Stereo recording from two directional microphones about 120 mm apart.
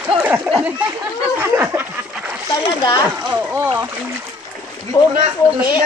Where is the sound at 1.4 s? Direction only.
20° right (ahead or behind).